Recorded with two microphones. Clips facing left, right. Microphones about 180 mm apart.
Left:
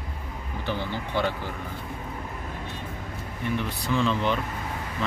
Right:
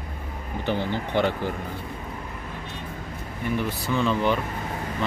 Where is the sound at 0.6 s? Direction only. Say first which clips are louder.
Right 4 dB; 55° right (ahead or behind).